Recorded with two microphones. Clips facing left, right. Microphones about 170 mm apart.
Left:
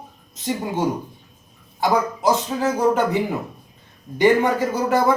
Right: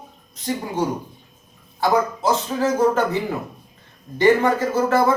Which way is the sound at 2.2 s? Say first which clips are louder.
Left 1 dB; 15° left (ahead or behind).